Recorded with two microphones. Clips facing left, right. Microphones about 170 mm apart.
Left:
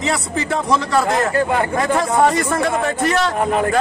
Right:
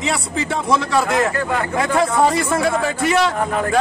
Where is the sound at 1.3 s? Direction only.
25° left (ahead or behind).